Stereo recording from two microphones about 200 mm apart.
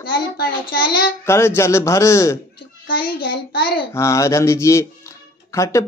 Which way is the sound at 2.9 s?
50° left (ahead or behind).